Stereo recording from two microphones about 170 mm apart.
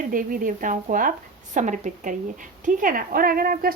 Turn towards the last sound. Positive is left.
turn(degrees=-60)  # may be behind; listen again after turning